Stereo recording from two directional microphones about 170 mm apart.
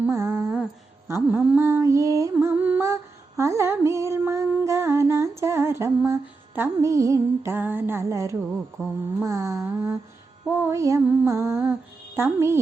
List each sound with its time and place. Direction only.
0.0 s humming: 15° right (ahead or behind)
1.0 s music: 10° right (ahead or behind)